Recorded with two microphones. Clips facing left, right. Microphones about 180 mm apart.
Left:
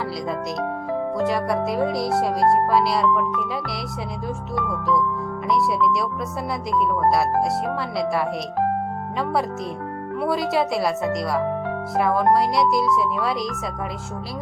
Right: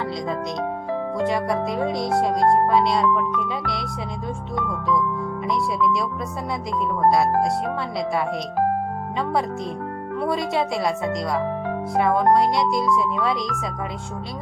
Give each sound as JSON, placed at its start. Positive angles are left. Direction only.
{"t": 1.2, "sound": "speech", "side_deg": 0}
{"t": 5.5, "sound": "speech", "side_deg": 0}
{"t": 10.2, "sound": "speech", "side_deg": 0}